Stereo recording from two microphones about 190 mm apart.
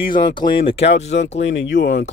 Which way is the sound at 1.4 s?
75° left (ahead or behind).